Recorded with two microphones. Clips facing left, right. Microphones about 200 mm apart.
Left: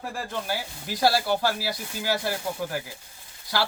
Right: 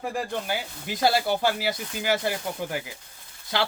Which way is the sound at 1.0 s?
20° right (ahead or behind).